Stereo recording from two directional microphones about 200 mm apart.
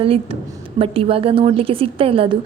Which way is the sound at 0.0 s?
30° right (ahead or behind).